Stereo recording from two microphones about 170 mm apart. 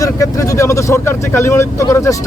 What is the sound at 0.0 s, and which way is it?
Speech, 20° left (ahead or behind).